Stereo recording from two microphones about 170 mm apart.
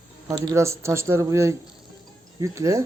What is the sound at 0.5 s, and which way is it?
A man's voice, 15° right (ahead or behind).